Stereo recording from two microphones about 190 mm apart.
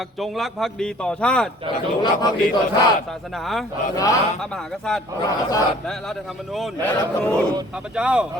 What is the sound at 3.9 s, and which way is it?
Speech, 15° left (ahead or behind).